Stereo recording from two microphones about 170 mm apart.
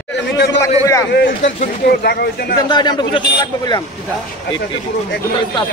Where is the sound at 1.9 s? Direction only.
70° left (ahead or behind).